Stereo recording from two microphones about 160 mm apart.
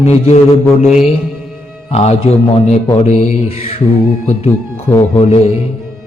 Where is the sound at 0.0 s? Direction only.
45° left (ahead or behind).